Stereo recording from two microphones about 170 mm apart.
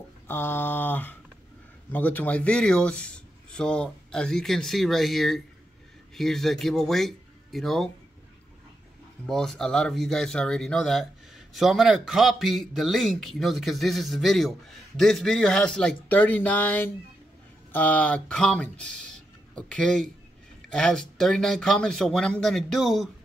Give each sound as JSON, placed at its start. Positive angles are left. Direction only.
{"t": 0.3, "sound": "speech", "side_deg": 10}
{"t": 9.2, "sound": "speech", "side_deg": 5}